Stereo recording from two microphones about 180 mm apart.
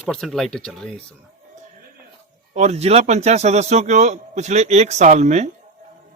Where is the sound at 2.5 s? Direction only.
40° right (ahead or behind).